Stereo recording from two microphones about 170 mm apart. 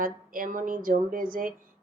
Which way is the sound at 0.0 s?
55° right (ahead or behind).